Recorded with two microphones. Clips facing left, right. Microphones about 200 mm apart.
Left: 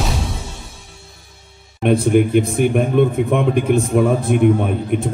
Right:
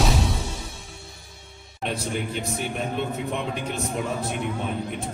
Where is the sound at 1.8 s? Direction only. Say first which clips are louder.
Left 14 dB; 55° left (ahead or behind).